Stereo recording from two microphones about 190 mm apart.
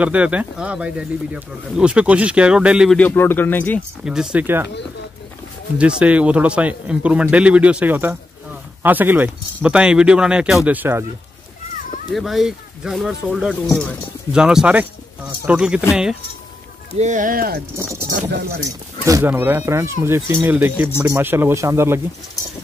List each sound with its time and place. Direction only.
0.0 s speech: 5° right (ahead or behind)
3.0 s speech: 10° left (ahead or behind)
4.0 s speech: 5° right (ahead or behind)
5.8 s a man's voice: 5° right (ahead or behind)
12.1 s speech: centre (ahead or behind)
17.0 s speech: 40° right (ahead or behind)
17.7 s a man's voice: 15° right (ahead or behind)
18.3 s speech: 55° right (ahead or behind)
19.0 s a man's voice: 15° right (ahead or behind)